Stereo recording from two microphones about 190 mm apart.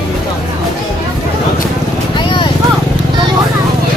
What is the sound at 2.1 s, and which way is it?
Vehicle, 25° left (ahead or behind).